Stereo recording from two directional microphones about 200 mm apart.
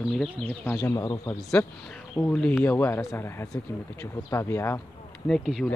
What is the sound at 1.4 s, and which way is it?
Speech, 5° left (ahead or behind).